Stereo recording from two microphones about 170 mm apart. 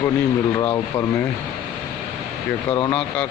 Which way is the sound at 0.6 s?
15° left (ahead or behind).